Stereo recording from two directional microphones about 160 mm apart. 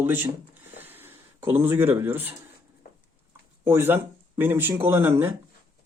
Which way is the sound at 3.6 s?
15° right (ahead or behind).